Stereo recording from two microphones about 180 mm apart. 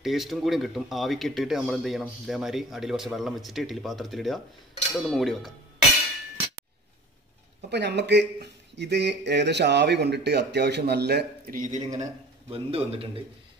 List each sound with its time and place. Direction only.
0.0 s speech: centre (ahead or behind)
7.7 s speech: 75° right (ahead or behind); by 13.2 s 30° right (ahead or behind)